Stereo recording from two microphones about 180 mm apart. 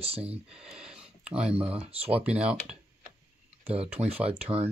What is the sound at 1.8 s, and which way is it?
Speech, 30° right (ahead or behind).